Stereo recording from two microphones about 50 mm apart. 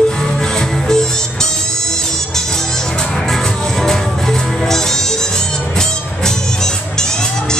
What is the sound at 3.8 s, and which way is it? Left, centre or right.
Music, centre.